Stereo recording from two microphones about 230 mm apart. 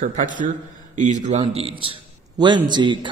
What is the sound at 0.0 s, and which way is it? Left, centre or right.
A man's voice, right.